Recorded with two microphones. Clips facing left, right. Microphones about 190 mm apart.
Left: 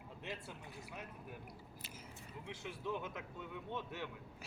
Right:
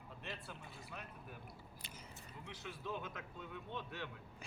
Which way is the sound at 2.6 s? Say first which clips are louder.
Left 3 dB; 20° left (ahead or behind).